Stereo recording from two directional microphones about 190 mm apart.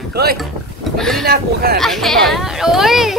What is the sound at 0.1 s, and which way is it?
Speech, 55° right (ahead or behind).